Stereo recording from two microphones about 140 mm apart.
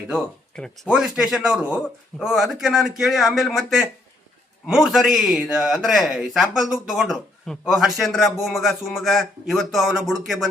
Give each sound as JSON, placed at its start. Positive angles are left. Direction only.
{"t": 0.5, "sound": "speech", "side_deg": 5}
{"t": 0.9, "sound": "speech", "side_deg": -5}